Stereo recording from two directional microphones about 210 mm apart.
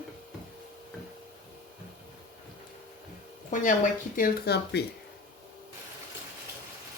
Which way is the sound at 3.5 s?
35° left (ahead or behind).